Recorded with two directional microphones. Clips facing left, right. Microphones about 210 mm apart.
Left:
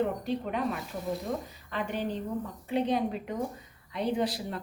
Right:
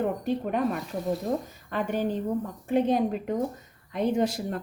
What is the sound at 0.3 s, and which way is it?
Speech, 45° right (ahead or behind).